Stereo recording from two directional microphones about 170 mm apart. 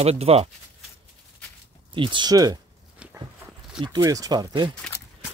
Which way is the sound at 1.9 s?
30° right (ahead or behind).